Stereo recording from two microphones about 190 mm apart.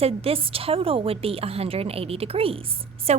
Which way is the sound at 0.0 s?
30° right (ahead or behind).